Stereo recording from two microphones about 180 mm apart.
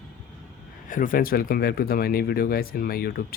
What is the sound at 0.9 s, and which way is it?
Speech, 50° left (ahead or behind).